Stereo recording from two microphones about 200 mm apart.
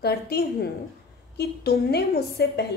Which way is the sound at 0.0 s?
50° left (ahead or behind).